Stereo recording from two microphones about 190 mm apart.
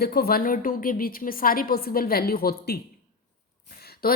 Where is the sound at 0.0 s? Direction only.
55° left (ahead or behind).